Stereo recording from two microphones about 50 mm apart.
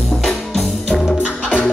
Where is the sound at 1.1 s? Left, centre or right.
Centre.